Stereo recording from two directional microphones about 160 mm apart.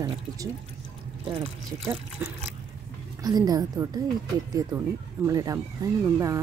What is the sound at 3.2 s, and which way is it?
Speech, 25° right (ahead or behind).